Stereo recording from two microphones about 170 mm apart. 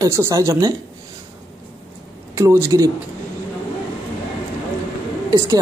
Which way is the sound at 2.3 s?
20° right (ahead or behind).